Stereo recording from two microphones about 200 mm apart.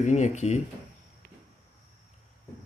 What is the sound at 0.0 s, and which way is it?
Speech, 35° left (ahead or behind).